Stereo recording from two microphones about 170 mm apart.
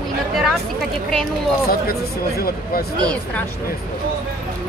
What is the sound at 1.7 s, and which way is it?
Speech, 60° left (ahead or behind).